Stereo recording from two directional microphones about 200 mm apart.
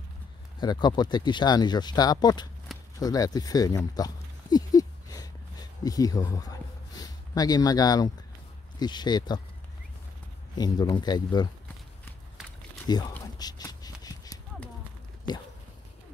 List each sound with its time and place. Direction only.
0.6 s speech: 20° left (ahead or behind)
3.0 s a sound: 20° left (ahead or behind)
8.7 s speech: 20° left (ahead or behind)
10.6 s speech: 20° left (ahead or behind)
12.8 s speech: 20° left (ahead or behind)
13.1 s clip-clop: 20° left (ahead or behind)